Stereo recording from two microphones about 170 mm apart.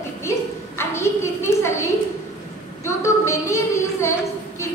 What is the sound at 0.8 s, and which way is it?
A woman's voice, 15° left (ahead or behind).